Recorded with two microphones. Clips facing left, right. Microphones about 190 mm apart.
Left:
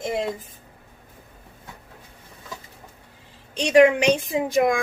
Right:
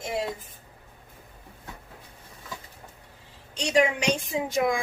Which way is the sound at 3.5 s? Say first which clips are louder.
Left 8 dB; 60° left (ahead or behind).